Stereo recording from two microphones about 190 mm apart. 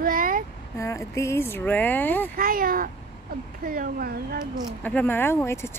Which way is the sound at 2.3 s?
50° right (ahead or behind).